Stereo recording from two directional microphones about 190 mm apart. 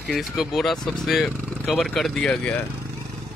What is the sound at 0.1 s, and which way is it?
Speech, centre (ahead or behind).